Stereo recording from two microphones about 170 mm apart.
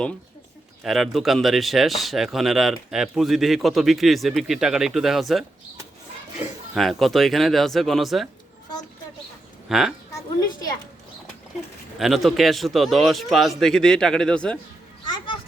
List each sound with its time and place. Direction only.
0.9 s speech: centre (ahead or behind)
6.7 s speech: centre (ahead or behind)
9.6 s speech: centre (ahead or behind)
10.2 s a woman's voice: 20° left (ahead or behind)
11.9 s speech: centre (ahead or behind)
15.0 s children playing: 25° left (ahead or behind)